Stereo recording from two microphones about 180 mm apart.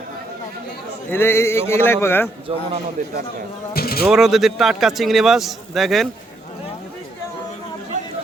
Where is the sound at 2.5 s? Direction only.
35° right (ahead or behind).